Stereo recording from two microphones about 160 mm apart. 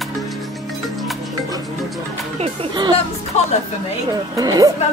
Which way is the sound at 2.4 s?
30° right (ahead or behind).